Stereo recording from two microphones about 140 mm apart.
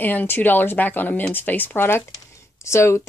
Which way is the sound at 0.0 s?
15° left (ahead or behind).